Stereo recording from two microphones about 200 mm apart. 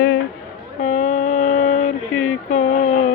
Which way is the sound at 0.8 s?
35° left (ahead or behind).